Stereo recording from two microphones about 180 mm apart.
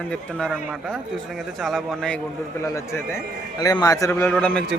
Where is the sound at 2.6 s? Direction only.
15° left (ahead or behind).